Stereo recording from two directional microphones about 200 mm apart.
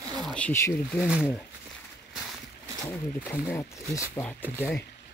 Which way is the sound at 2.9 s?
10° left (ahead or behind).